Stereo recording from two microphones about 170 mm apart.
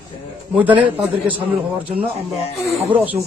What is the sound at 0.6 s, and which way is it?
Speech, 10° right (ahead or behind).